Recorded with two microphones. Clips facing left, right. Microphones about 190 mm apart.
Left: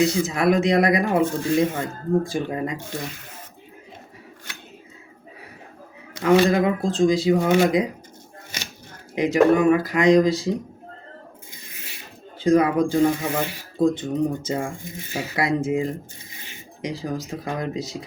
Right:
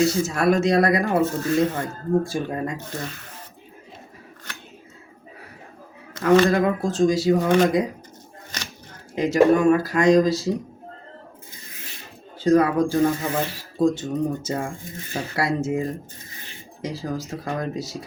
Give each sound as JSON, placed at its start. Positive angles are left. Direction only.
{"t": 0.0, "sound": "speech", "side_deg": 15}
{"t": 6.1, "sound": "speech", "side_deg": 15}
{"t": 8.5, "sound": "a sound", "side_deg": 10}
{"t": 9.1, "sound": "speech", "side_deg": 15}
{"t": 12.4, "sound": "speech", "side_deg": 15}
{"t": 14.9, "sound": "speech", "side_deg": 10}